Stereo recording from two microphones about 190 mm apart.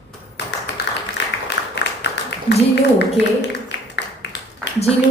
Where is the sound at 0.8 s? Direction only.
55° left (ahead or behind).